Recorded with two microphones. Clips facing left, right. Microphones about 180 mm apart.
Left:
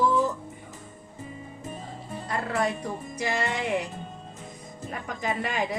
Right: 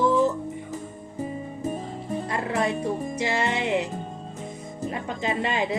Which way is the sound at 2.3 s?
20° right (ahead or behind).